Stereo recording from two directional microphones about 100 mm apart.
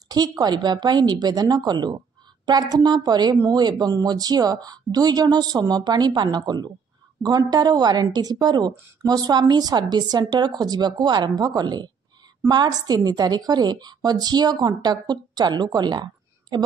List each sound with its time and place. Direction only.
0.4 s a woman's voice: 45° right (ahead or behind)